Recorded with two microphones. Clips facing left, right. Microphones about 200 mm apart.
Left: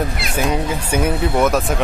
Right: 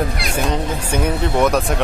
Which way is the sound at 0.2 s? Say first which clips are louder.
Left 1 dB; 5° left (ahead or behind).